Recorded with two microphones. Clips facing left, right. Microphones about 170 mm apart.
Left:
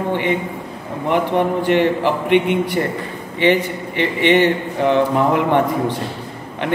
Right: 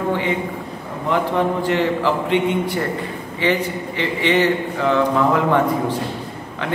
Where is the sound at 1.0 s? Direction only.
20° left (ahead or behind).